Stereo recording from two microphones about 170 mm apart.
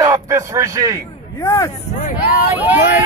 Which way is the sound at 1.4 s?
20° left (ahead or behind).